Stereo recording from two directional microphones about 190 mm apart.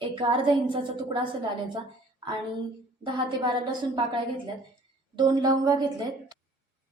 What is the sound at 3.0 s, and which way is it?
A woman's voice, 25° right (ahead or behind).